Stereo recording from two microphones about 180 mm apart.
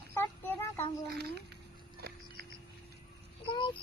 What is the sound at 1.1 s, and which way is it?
Speech, 65° right (ahead or behind).